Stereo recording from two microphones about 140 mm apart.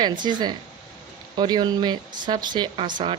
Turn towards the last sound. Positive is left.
turn(degrees=-35)  # may be behind; listen again after turning